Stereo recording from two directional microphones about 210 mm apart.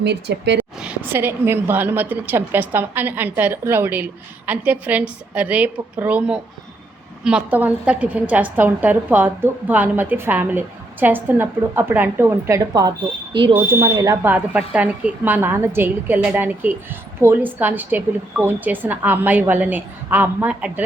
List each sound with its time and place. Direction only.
0.0 s speech: 55° right (ahead or behind)
0.5 s speech: 5° right (ahead or behind)